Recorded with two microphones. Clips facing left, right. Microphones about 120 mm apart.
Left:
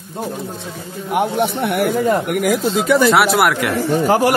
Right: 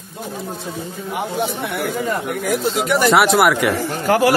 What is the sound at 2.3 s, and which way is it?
Speech, 90° left.